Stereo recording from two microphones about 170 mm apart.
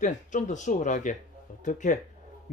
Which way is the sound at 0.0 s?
45° left (ahead or behind).